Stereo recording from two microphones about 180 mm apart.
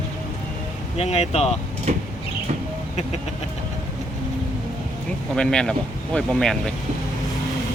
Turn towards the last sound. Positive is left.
turn(degrees=5)  # may be behind; listen again after turning